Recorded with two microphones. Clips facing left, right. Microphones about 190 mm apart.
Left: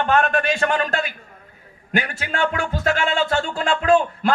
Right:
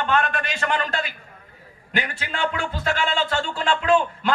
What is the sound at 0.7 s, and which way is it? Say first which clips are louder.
A man's voice: left 3 dB; 45° left (ahead or behind).